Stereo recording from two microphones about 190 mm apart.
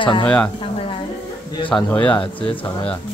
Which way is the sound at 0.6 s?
30° left (ahead or behind).